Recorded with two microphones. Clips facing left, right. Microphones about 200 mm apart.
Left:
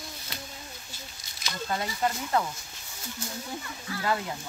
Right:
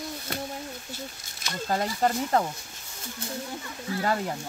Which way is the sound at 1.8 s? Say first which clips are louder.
Right 5 dB; 40° right (ahead or behind).